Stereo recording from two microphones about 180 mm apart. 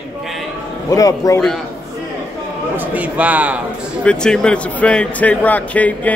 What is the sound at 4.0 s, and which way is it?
A man's voice, 5° left (ahead or behind).